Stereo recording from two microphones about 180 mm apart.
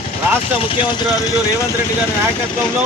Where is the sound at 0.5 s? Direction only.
30° left (ahead or behind).